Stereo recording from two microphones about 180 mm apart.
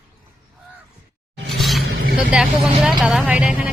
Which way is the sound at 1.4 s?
Centre (ahead or behind).